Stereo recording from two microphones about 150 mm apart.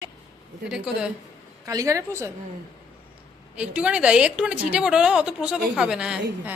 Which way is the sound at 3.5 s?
10° right (ahead or behind).